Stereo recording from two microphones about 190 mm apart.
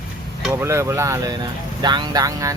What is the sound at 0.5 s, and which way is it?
Speech, 15° right (ahead or behind).